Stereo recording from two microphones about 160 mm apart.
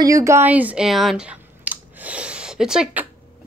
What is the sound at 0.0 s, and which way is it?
Speech, 20° right (ahead or behind).